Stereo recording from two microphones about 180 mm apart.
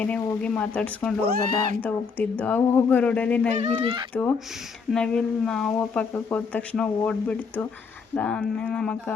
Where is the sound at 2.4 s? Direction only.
10° left (ahead or behind).